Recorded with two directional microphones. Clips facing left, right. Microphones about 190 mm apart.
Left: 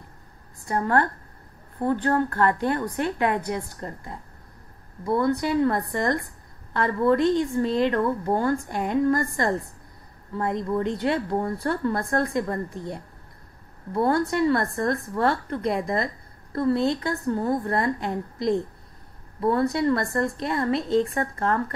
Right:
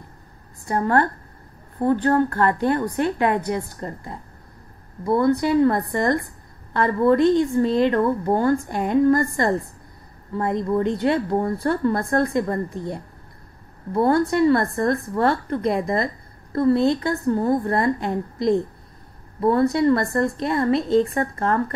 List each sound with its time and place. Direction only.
0.7 s a woman's voice: 35° right (ahead or behind)